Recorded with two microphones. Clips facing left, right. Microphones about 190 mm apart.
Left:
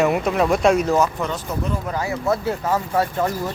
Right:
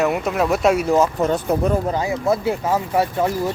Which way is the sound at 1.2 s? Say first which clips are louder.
Right 7 dB; 45° right (ahead or behind).